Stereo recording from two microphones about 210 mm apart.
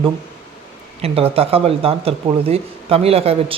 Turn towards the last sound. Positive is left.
turn(degrees=-30)  # may be behind; listen again after turning